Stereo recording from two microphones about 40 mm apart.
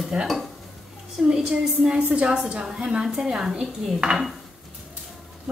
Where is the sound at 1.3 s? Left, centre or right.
Right.